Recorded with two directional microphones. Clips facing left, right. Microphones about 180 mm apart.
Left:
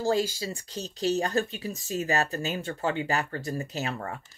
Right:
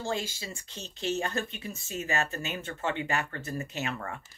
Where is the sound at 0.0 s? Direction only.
35° left (ahead or behind).